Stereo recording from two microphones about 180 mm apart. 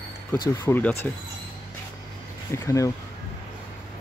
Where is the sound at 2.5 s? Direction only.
15° left (ahead or behind).